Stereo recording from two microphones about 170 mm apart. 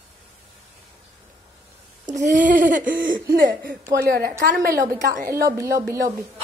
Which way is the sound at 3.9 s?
65° right (ahead or behind).